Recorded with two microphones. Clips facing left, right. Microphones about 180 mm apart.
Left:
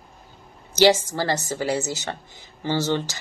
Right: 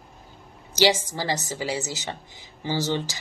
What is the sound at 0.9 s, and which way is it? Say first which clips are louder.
Speech: left 4 dB; 15° right (ahead or behind).